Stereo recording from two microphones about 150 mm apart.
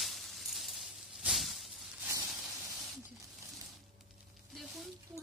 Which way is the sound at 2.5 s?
20° right (ahead or behind).